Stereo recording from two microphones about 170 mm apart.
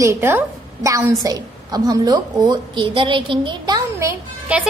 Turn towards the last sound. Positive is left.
turn(degrees=-10)  # may be behind; listen again after turning